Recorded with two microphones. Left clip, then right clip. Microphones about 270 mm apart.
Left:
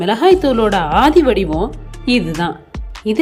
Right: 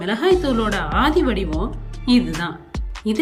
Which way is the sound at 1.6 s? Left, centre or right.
Centre.